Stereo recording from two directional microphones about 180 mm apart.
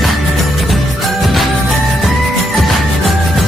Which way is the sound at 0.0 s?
Centre (ahead or behind).